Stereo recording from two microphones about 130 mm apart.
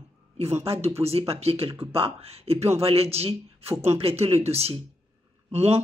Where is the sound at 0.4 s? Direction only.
55° right (ahead or behind).